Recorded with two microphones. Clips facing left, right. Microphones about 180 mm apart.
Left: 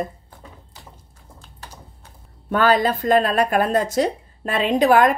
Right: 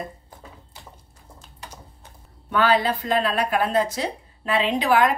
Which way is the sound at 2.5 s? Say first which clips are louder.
Left 3 dB; 45° left (ahead or behind).